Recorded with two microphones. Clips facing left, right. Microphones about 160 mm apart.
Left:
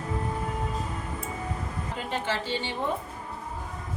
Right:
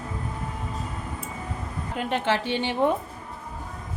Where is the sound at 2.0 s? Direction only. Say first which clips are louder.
Right 6 dB; 65° right (ahead or behind).